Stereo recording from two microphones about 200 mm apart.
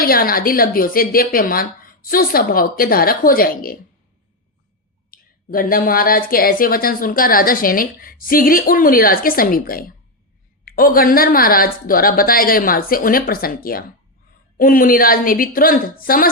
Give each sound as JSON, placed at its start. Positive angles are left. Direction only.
{"t": 0.0, "sound": "speech", "side_deg": 45}
{"t": 5.1, "sound": "speech", "side_deg": 45}